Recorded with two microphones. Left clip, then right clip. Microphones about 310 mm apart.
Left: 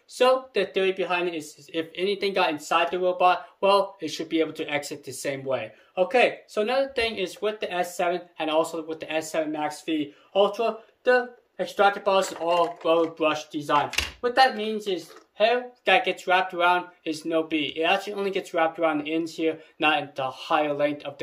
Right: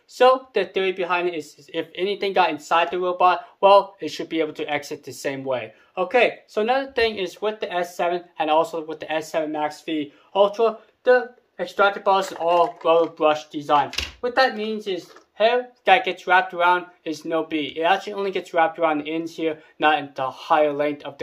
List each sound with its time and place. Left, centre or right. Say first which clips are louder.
0.1 s speech: right 4 dB; centre